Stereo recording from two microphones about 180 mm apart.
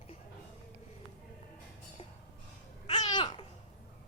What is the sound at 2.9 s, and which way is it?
Babbling, 25° left (ahead or behind).